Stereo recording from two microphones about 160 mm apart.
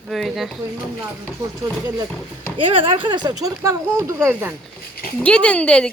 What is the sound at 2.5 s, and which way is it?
Speech, 35° right (ahead or behind).